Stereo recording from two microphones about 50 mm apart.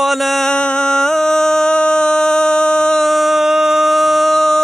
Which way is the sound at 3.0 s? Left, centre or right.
Centre.